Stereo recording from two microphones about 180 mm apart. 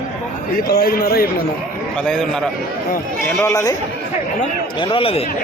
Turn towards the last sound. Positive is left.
turn(degrees=30)  # may be behind; listen again after turning